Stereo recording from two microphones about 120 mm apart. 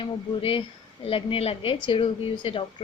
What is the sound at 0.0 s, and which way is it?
A woman's voice, 45° left (ahead or behind).